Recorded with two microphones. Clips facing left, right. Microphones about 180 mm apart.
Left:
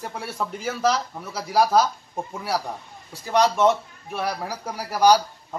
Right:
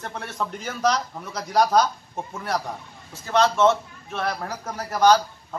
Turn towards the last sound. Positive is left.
turn(degrees=10)  # may be behind; listen again after turning